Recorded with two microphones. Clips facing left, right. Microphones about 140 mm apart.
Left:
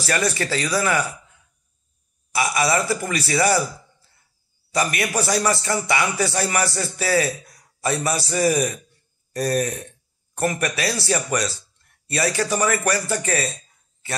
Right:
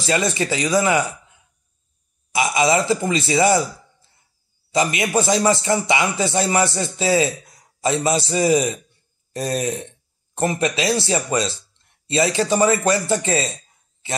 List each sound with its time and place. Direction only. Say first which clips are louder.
0.0 s speech: right 2 dB; 20° right (ahead or behind)
2.3 s speech: right 3 dB; 20° right (ahead or behind)
4.7 s speech: right 3 dB; 20° right (ahead or behind)